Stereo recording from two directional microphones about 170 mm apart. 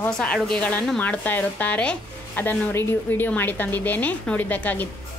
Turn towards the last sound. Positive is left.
turn(degrees=10)  # may be behind; listen again after turning